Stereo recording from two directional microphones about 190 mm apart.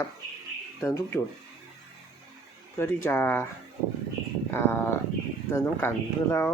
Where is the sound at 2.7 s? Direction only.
15° left (ahead or behind).